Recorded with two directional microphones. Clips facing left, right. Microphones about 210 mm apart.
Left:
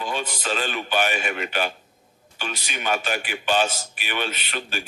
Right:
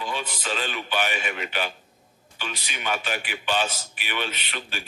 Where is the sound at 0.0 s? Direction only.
45° left (ahead or behind).